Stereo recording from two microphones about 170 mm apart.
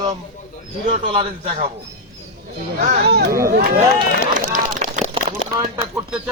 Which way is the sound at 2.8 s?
70° right (ahead or behind).